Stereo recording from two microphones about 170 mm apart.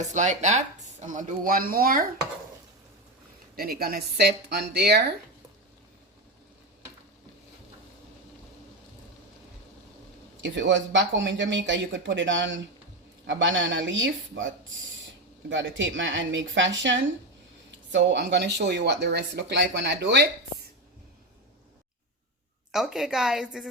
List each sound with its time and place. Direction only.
0.1 s speech: 45° right (ahead or behind); by 2.0 s 60° right (ahead or behind)
3.5 s speech: 60° right (ahead or behind)
10.4 s speech: 90° right
15.4 s speech: 90° right
22.7 s a woman's voice: centre (ahead or behind)